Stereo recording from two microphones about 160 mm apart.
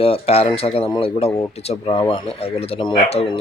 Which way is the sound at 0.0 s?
40° left (ahead or behind).